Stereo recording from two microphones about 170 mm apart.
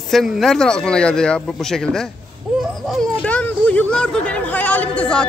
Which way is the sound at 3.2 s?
10° left (ahead or behind).